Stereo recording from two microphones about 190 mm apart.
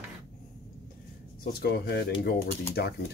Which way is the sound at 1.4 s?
55° left (ahead or behind).